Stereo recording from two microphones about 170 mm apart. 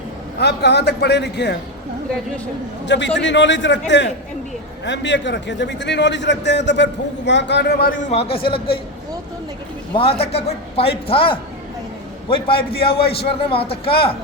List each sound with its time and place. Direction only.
0.3 s a man's voice: 80° left
2.8 s a man's voice: 90° left; by 8.0 s 60° left (ahead or behind)
8.1 s a man's voice: 35° left (ahead or behind)
9.9 s a man's voice: 35° left (ahead or behind)